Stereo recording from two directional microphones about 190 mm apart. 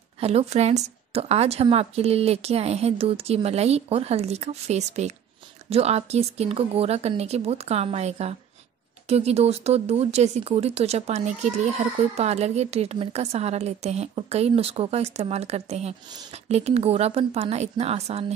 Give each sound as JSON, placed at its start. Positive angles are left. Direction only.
{"t": 0.2, "sound": "a woman's voice", "side_deg": -35}